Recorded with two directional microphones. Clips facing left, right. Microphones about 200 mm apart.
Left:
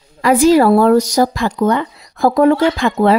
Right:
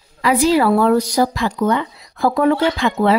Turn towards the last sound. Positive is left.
turn(degrees=45)  # may be behind; listen again after turning